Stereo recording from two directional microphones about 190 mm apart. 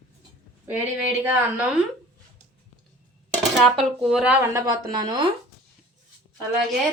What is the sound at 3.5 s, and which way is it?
Speech, centre (ahead or behind).